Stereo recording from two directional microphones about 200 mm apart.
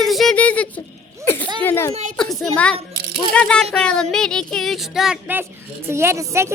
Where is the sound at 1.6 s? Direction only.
10° left (ahead or behind).